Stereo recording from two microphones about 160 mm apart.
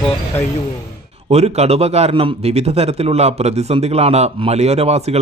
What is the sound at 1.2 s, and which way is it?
Speech, 40° right (ahead or behind).